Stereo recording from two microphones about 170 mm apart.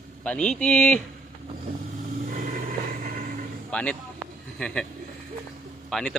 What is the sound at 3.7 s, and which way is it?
Speech, 5° left (ahead or behind).